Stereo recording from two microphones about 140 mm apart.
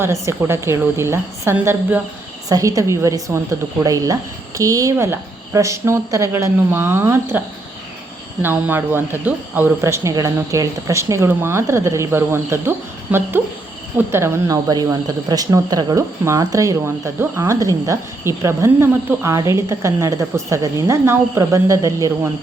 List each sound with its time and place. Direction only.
0.0 s speech: 20° right (ahead or behind)